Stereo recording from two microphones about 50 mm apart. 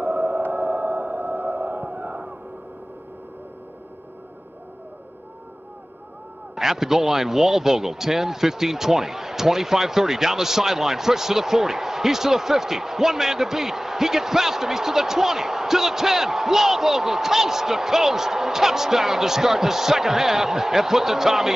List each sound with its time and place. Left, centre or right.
0.0 s sonar: right
6.5 s a man's voice: centre